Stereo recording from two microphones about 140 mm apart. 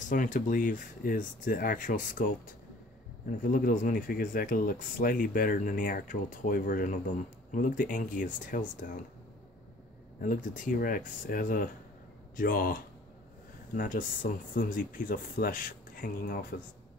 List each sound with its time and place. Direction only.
0.1 s speech: 70° left (ahead or behind)
10.2 s speech: 70° left (ahead or behind)
12.4 s speech: 90° left
13.7 s speech: 75° left (ahead or behind); by 16.5 s 90° left